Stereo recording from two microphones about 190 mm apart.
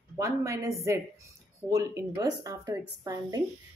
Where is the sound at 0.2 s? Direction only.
15° right (ahead or behind).